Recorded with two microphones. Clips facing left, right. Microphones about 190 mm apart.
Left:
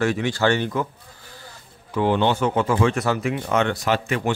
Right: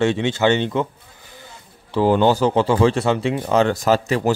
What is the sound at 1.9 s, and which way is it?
Speech, 40° right (ahead or behind).